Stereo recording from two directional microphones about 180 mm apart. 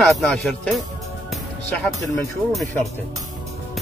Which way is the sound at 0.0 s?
5° left (ahead or behind).